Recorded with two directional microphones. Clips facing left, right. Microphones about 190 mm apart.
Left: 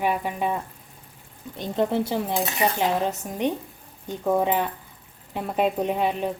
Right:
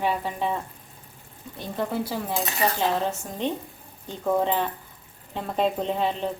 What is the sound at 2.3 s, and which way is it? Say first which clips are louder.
Cutlery: left 2 dB; 15° left (ahead or behind).